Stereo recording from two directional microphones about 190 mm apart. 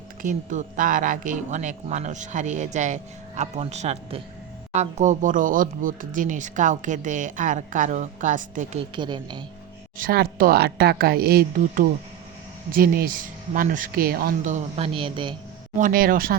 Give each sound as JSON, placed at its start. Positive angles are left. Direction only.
{"t": 0.2, "sound": "speech", "side_deg": -45}
{"t": 9.0, "sound": "speech", "side_deg": -25}
{"t": 10.0, "sound": "speech", "side_deg": -50}
{"t": 14.9, "sound": "speech", "side_deg": -25}
{"t": 15.8, "sound": "speech", "side_deg": -50}